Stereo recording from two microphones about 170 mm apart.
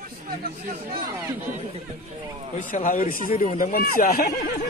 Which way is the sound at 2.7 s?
50° left (ahead or behind).